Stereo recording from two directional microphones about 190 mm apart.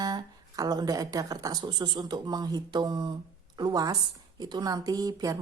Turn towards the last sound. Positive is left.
turn(degrees=-20)  # may be behind; listen again after turning